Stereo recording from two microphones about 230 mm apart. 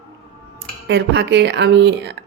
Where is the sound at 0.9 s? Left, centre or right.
Right.